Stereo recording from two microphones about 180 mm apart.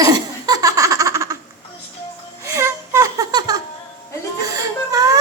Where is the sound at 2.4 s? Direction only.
15° right (ahead or behind).